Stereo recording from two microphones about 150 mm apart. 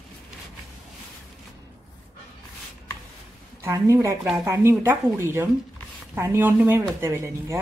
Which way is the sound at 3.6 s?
20° right (ahead or behind).